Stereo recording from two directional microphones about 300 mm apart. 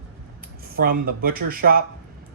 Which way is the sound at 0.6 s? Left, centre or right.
Right.